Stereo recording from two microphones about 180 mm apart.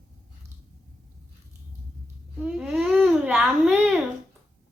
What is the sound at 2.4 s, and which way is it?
Babbling, 5° right (ahead or behind).